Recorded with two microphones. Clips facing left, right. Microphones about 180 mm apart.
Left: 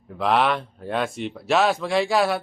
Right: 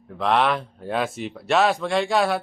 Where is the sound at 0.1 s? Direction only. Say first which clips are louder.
Even; centre (ahead or behind).